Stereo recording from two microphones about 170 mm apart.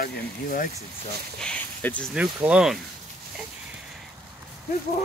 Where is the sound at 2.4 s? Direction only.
5° right (ahead or behind).